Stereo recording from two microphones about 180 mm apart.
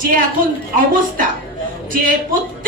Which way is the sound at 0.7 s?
45° right (ahead or behind).